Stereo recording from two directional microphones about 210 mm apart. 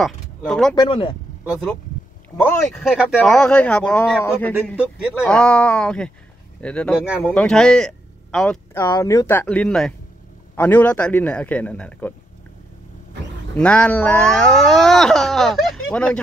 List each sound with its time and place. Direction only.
0.0 s speech: centre (ahead or behind)
0.7 s speech: 25° left (ahead or behind)
1.4 s speech: centre (ahead or behind)
3.0 s a man's voice: 5° right (ahead or behind)
8.7 s a man's voice: 15° left (ahead or behind)
13.6 s speech: 5° left (ahead or behind)